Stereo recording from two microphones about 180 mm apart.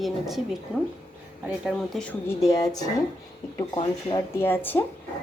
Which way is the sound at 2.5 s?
20° left (ahead or behind).